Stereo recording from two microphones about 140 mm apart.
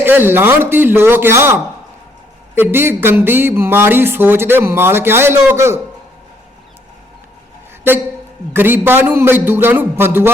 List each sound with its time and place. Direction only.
0.0 s speech: 15° right (ahead or behind)
2.6 s speech: 15° right (ahead or behind)
8.5 s speech: 15° right (ahead or behind)